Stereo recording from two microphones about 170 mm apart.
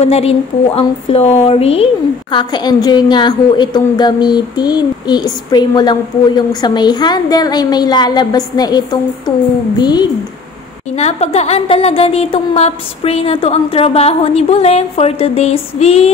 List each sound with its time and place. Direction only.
0.0 s a woman's voice: 35° left (ahead or behind)
2.3 s a woman's voice: 25° left (ahead or behind)
11.0 s a woman's voice: 40° left (ahead or behind)